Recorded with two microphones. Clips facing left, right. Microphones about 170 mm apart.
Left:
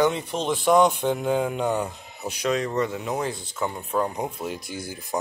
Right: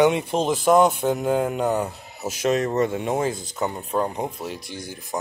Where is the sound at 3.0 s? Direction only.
25° right (ahead or behind).